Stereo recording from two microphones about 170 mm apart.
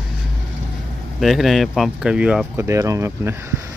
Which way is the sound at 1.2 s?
Centre (ahead or behind).